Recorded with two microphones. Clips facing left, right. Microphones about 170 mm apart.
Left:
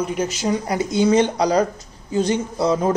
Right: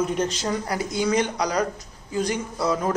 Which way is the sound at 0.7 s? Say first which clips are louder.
Left 8 dB; 25° left (ahead or behind).